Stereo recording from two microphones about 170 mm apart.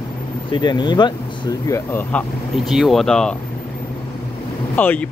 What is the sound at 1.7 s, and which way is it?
Speech, 10° left (ahead or behind).